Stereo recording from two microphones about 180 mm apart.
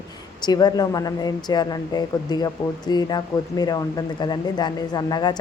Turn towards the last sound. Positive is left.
turn(degrees=20)  # may be behind; listen again after turning